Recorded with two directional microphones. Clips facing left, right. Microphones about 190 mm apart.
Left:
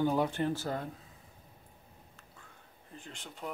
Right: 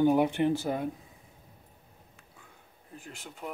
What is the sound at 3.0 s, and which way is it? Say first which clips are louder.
Speech: right 2 dB; 5° right (ahead or behind).